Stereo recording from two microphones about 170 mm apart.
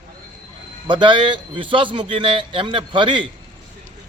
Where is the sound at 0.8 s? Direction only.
30° right (ahead or behind).